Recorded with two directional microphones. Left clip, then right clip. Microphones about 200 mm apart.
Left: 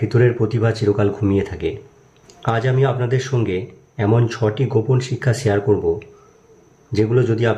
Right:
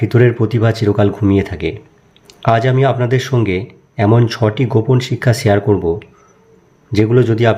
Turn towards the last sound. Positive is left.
turn(degrees=-25)  # may be behind; listen again after turning